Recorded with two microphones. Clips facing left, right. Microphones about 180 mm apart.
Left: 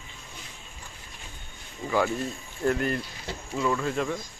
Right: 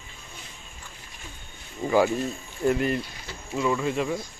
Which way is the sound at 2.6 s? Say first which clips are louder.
Right 2 dB; 5° right (ahead or behind).